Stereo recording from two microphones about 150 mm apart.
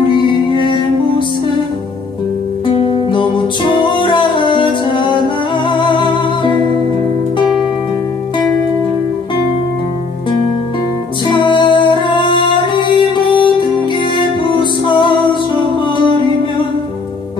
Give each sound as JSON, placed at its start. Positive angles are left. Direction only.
{"t": 0.1, "sound": "music", "side_deg": 35}
{"t": 2.6, "sound": "music", "side_deg": 35}
{"t": 11.2, "sound": "music", "side_deg": 30}